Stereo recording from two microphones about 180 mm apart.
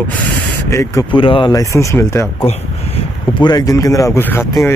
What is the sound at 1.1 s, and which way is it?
Speech, 30° left (ahead or behind).